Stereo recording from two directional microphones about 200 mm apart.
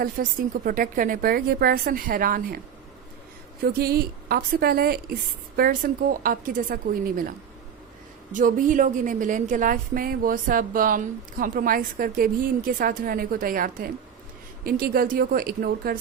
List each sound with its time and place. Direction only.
0.0 s a woman's voice: 45° right (ahead or behind)
3.6 s a woman's voice: 50° right (ahead or behind)